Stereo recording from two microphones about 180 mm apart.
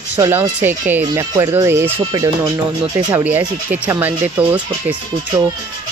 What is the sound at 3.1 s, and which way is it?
Speech, 10° right (ahead or behind).